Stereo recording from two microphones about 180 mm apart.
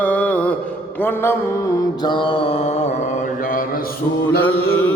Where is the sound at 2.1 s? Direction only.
30° left (ahead or behind).